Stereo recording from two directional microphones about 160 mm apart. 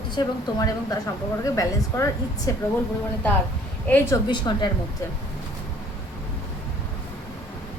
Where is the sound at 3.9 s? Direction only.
10° left (ahead or behind).